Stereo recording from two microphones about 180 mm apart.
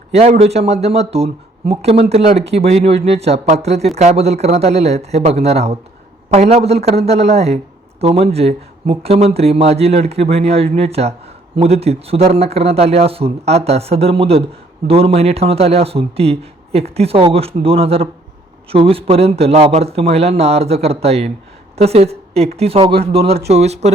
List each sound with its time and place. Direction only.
0.1 s a woman's voice: 35° right (ahead or behind)